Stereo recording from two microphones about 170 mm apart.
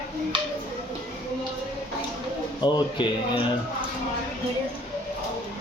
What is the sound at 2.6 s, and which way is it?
Speech, 25° left (ahead or behind).